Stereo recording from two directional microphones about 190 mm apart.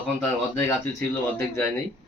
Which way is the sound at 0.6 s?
10° left (ahead or behind).